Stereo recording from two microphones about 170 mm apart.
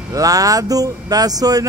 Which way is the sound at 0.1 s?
20° right (ahead or behind).